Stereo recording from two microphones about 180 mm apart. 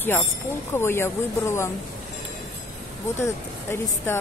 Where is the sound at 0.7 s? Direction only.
15° left (ahead or behind).